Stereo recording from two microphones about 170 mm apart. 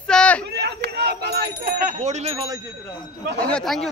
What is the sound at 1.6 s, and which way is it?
Speech, 40° right (ahead or behind).